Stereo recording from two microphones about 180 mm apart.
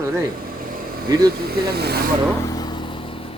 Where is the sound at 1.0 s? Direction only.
20° right (ahead or behind).